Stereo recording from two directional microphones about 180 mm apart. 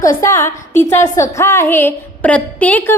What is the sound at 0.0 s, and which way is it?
A woman's voice, 20° left (ahead or behind).